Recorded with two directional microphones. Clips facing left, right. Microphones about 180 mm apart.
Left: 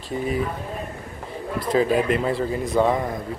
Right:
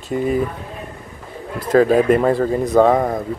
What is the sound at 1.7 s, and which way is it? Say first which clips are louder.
Speech: right 7 dB; 45° right (ahead or behind).